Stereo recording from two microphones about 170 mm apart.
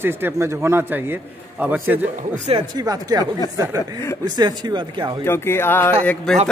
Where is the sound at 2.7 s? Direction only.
20° right (ahead or behind).